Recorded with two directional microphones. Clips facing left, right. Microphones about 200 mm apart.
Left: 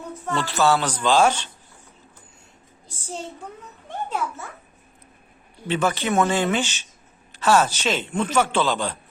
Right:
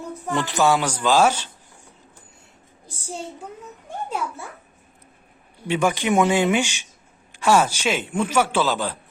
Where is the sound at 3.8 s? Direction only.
10° right (ahead or behind).